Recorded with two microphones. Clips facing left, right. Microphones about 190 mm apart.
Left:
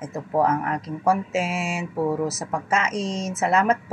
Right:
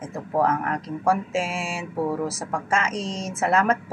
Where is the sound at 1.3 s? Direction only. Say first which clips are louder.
Left 1 dB; 5° left (ahead or behind).